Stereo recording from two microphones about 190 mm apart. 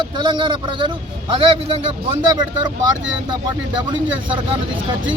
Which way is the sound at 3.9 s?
25° right (ahead or behind).